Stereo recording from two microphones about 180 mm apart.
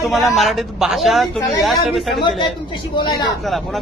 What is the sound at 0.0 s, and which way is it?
A man's voice, centre (ahead or behind).